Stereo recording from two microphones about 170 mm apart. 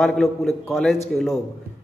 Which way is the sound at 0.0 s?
Centre (ahead or behind).